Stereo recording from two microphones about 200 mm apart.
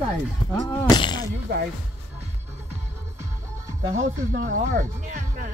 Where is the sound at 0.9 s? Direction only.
20° left (ahead or behind).